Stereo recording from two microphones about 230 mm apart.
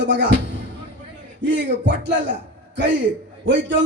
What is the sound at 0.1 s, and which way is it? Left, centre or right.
Speech, right.